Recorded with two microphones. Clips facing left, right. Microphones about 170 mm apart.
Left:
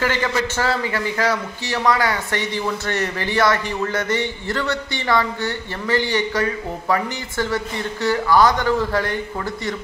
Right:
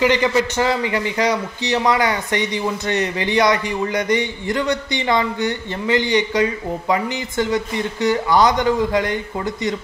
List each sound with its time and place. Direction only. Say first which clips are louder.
0.0 s a man's voice: right 5 dB; 15° right (ahead or behind)